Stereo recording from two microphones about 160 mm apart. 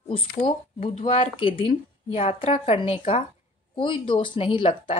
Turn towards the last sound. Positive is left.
turn(degrees=35)  # may be behind; listen again after turning